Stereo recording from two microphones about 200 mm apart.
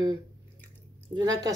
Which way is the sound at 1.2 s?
20° right (ahead or behind).